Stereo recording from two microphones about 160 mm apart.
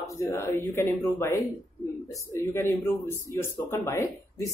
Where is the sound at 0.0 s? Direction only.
20° left (ahead or behind).